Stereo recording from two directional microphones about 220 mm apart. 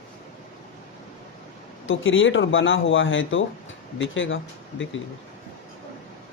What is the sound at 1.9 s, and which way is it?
Speech, 60° left (ahead or behind).